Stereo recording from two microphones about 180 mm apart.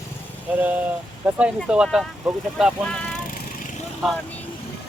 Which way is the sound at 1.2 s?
5° right (ahead or behind).